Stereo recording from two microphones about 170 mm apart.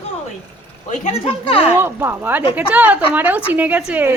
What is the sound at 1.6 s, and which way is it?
Speech, 10° right (ahead or behind).